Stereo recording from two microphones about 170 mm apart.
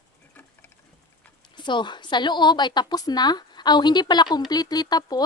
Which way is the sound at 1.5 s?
25° left (ahead or behind).